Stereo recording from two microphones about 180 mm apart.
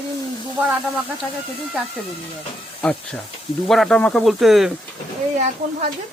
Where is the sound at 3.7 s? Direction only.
Centre (ahead or behind).